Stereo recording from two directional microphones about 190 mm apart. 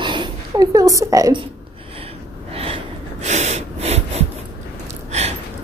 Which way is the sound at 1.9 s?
30° right (ahead or behind).